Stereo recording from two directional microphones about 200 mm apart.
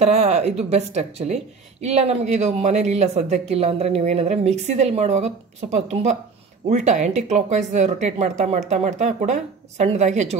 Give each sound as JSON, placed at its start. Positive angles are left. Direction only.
{"t": 0.0, "sound": "a woman's voice", "side_deg": -30}